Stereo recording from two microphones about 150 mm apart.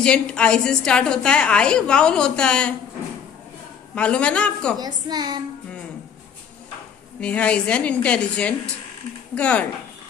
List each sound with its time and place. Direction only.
0.0 s a woman's voice: 5° left (ahead or behind)
3.9 s a woman's voice: 10° left (ahead or behind)
4.7 s a child's voice: 25° right (ahead or behind)
7.2 s a woman's voice: 10° left (ahead or behind)